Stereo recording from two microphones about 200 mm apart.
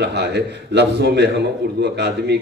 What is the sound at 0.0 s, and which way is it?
A man's voice, 60° right (ahead or behind).